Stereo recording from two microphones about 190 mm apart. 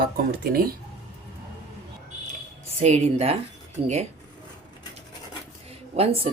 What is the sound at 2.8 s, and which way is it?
Speech, 35° right (ahead or behind).